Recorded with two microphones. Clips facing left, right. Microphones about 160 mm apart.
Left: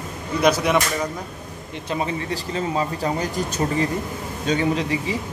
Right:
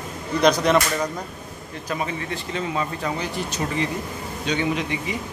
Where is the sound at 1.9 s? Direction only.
30° left (ahead or behind).